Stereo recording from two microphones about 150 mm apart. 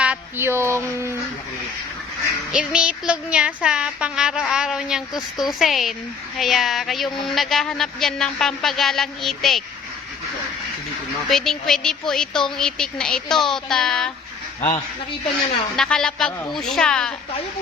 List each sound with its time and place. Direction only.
0.0 s speech: 10° right (ahead or behind)
2.5 s a woman's voice: 5° right (ahead or behind)
11.3 s a woman's voice: centre (ahead or behind)
15.7 s a woman's voice: 5° left (ahead or behind)